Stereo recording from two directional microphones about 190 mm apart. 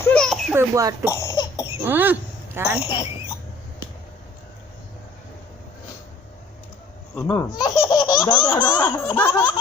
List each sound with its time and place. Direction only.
0.0 s a sound: 5° left (ahead or behind)
0.5 s a child's voice: 15° right (ahead or behind)
1.0 s cough: 15° left (ahead or behind)
1.8 s a child's voice: 10° right (ahead or behind)
2.8 s speech: 25° left (ahead or behind)
7.2 s speech: 20° left (ahead or behind)